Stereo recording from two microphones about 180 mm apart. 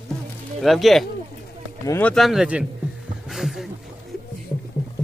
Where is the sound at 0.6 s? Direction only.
Centre (ahead or behind).